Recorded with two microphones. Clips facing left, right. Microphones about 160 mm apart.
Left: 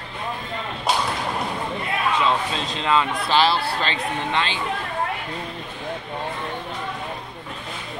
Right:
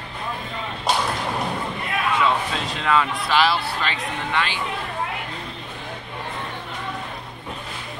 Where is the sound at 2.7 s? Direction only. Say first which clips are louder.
Even; 25° left (ahead or behind).